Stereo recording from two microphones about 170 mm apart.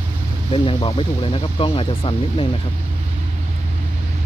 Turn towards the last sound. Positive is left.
turn(degrees=30)  # may be behind; listen again after turning